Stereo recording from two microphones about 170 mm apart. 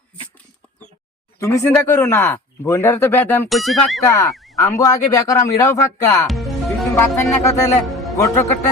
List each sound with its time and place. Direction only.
1.4 s speech: 15° left (ahead or behind)
3.5 s speech: centre (ahead or behind)
4.0 s speech: 15° left (ahead or behind)
4.3 s a sound: centre (ahead or behind)
4.5 s speech: 15° left (ahead or behind)
6.2 s music: centre (ahead or behind)
7.2 s speech: 15° left (ahead or behind)
7.9 s music: centre (ahead or behind)
8.1 s a man's voice: 20° left (ahead or behind)